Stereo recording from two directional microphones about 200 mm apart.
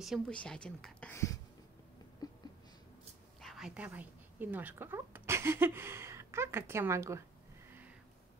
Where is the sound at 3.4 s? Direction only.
Centre (ahead or behind).